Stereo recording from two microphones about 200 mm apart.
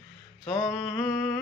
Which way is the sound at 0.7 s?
Centre (ahead or behind).